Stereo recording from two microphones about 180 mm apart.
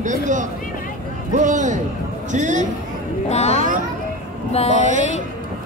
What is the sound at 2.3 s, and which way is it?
Speech, 45° right (ahead or behind).